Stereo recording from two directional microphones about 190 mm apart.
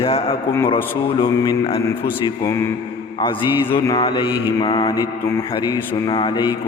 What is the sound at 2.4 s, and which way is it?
Speech, 15° left (ahead or behind).